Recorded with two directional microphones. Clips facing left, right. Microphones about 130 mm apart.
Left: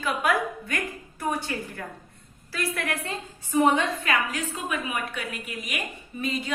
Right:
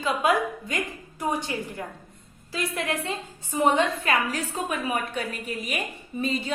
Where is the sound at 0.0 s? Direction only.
25° right (ahead or behind).